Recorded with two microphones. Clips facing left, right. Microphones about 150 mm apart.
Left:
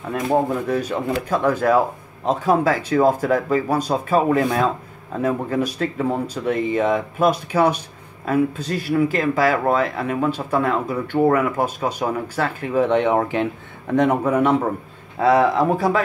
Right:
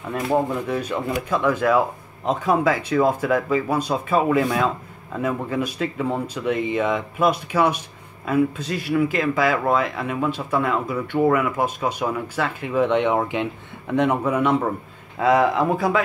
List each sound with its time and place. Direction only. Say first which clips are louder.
0.5 s speech: left 3 dB; 40° left (ahead or behind)